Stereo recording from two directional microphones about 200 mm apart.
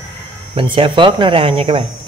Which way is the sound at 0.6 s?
25° right (ahead or behind).